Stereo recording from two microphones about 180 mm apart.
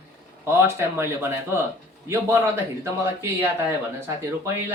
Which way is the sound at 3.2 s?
10° right (ahead or behind).